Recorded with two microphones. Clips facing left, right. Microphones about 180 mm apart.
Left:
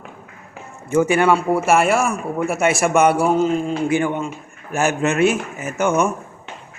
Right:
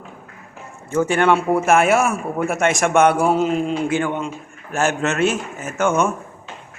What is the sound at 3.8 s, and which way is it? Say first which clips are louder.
A man's voice: left 2 dB; 15° left (ahead or behind).